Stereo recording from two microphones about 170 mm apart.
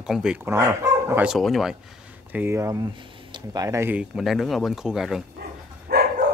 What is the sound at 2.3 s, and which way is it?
Speech, 15° right (ahead or behind).